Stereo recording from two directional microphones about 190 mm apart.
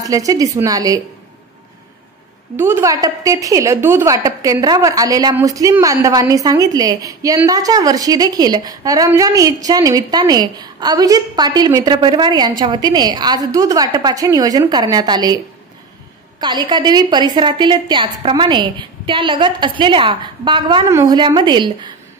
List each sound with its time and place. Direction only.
0.0 s a woman's voice: 20° right (ahead or behind)
2.5 s a woman's voice: 10° right (ahead or behind)
16.3 s a woman's voice: 20° right (ahead or behind)